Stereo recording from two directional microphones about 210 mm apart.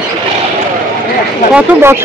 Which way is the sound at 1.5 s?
10° right (ahead or behind).